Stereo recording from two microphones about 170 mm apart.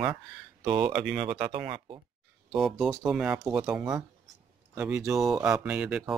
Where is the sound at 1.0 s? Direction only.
5° right (ahead or behind).